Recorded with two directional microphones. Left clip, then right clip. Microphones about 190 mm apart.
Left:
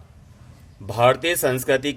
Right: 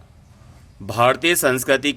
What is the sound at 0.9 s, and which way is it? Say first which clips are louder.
A man's voice: right 1 dB; 35° right (ahead or behind).